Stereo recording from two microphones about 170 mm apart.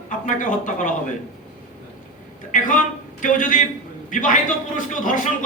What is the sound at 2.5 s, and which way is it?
A man's voice, 50° left (ahead or behind).